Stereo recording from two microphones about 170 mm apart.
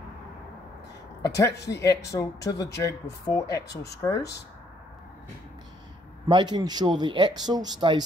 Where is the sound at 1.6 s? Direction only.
80° left.